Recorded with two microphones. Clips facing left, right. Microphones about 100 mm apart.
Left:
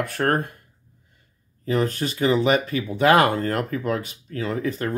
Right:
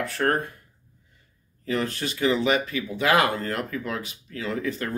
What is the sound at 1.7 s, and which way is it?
Speech, 40° left (ahead or behind).